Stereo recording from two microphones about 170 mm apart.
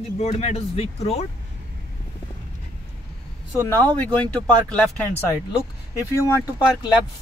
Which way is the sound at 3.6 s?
10° left (ahead or behind).